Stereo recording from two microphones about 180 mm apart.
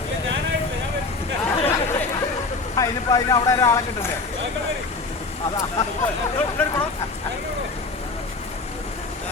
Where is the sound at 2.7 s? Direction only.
20° left (ahead or behind).